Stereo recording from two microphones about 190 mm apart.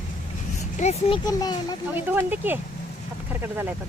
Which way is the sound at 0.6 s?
35° left (ahead or behind).